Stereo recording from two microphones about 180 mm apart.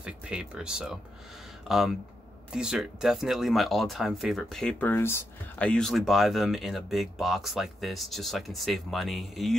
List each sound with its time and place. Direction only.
0.0 s speech: 5° right (ahead or behind)